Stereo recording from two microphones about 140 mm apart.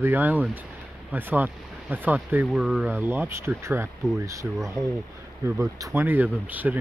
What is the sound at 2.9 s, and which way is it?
Speech, 15° right (ahead or behind).